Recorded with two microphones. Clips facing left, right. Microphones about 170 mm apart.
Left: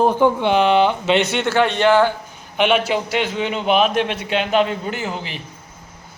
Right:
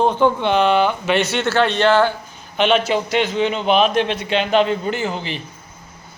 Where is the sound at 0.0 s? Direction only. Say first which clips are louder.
Left 1 dB; 10° left (ahead or behind).